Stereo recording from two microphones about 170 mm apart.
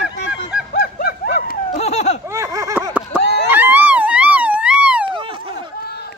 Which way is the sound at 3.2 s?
85° left.